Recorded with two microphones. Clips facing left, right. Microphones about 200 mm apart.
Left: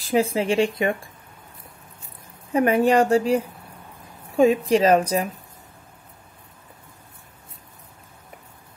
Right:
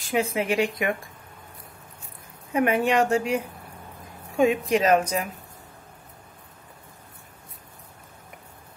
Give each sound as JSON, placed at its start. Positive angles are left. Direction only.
{"t": 0.0, "sound": "speech", "side_deg": 30}
{"t": 2.5, "sound": "speech", "side_deg": 35}